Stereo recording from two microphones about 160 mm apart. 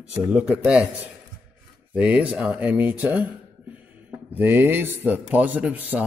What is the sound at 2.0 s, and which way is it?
A man's voice, 10° right (ahead or behind).